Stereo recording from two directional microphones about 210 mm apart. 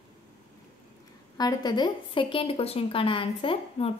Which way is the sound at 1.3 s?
20° left (ahead or behind).